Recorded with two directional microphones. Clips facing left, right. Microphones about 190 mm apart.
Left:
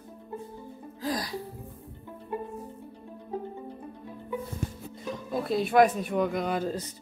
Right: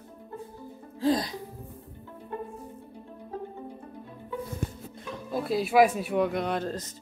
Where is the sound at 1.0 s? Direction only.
25° right (ahead or behind).